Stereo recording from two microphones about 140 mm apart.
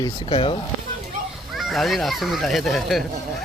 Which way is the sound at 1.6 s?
Centre (ahead or behind).